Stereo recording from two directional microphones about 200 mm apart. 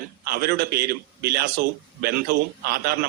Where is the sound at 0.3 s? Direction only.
50° right (ahead or behind).